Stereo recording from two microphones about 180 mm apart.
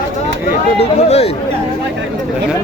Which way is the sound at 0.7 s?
35° left (ahead or behind).